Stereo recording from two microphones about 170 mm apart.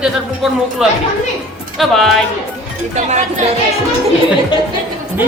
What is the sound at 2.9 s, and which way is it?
Speech, 45° right (ahead or behind).